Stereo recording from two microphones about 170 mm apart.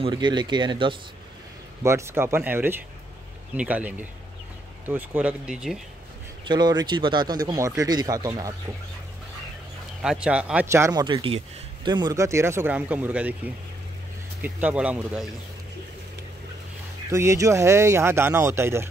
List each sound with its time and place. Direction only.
0.0 s speech: 25° right (ahead or behind)
1.8 s a man's voice: 15° right (ahead or behind)
6.4 s speech: 25° right (ahead or behind)
10.0 s a man's voice: 5° right (ahead or behind)
17.1 s a man's voice: 15° right (ahead or behind)